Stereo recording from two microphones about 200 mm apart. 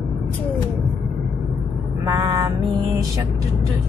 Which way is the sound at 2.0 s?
20° right (ahead or behind).